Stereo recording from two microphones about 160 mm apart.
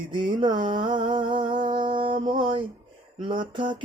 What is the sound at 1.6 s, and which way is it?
Mantra, 30° right (ahead or behind).